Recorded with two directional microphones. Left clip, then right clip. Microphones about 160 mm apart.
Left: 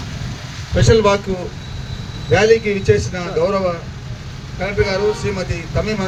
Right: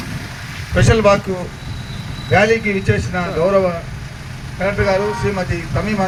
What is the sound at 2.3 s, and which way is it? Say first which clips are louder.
Speech: left 1 dB; 55° left (ahead or behind).